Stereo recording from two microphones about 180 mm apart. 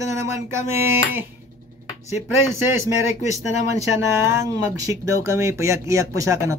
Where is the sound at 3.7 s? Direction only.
15° right (ahead or behind).